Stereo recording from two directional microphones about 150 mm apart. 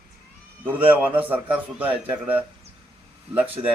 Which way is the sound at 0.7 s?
10° right (ahead or behind).